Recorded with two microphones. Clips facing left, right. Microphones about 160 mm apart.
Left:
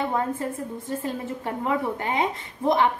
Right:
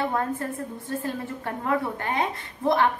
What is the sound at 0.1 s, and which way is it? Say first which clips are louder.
A woman's voice: left 1 dB; 20° left (ahead or behind).